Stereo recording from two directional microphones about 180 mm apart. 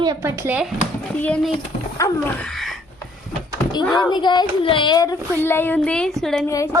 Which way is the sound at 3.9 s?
25° left (ahead or behind).